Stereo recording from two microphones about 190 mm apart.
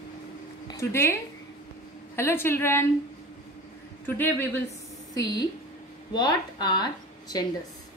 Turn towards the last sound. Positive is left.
turn(degrees=20)  # may be behind; listen again after turning